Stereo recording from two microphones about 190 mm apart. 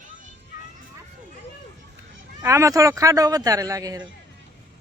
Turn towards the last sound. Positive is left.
turn(degrees=-20)  # may be behind; listen again after turning